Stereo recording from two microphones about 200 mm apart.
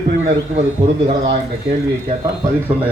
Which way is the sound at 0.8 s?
30° right (ahead or behind).